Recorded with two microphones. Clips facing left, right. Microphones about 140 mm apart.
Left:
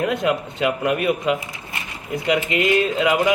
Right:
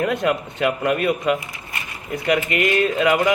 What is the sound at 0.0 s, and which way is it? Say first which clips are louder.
A man's voice: even; 15° left (ahead or behind).